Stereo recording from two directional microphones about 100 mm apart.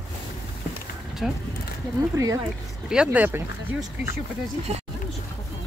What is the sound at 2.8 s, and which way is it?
Speech, 10° right (ahead or behind).